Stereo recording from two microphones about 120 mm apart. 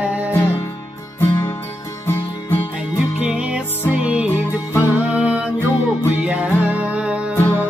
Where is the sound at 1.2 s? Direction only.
20° left (ahead or behind).